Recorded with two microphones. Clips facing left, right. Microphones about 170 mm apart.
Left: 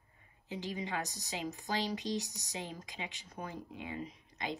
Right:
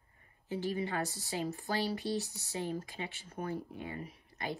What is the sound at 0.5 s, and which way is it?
A woman's voice, 15° left (ahead or behind).